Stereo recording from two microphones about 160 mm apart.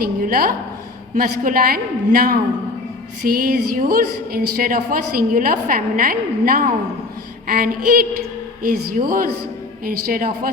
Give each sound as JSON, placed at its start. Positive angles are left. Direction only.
{"t": 0.0, "sound": "a woman's voice", "side_deg": -65}